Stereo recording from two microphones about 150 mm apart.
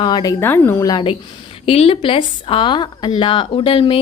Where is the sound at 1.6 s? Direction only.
40° left (ahead or behind).